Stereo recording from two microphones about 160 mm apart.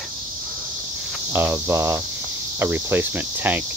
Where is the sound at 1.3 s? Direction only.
15° right (ahead or behind).